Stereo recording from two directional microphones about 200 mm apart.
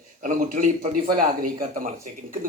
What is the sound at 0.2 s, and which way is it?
Speech, 40° right (ahead or behind).